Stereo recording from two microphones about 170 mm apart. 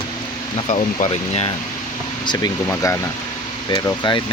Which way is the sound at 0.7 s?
40° left (ahead or behind).